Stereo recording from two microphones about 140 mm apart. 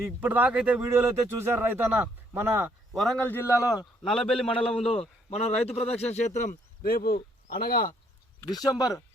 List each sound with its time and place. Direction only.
0.2 s speech: 10° right (ahead or behind)
2.9 s a man's voice: centre (ahead or behind)
3.2 s a man's voice: 15° left (ahead or behind)
4.0 s a man's voice: centre (ahead or behind)
4.7 s a man's voice: 45° left (ahead or behind); by 7.8 s 90° left
8.4 s speech: 25° left (ahead or behind)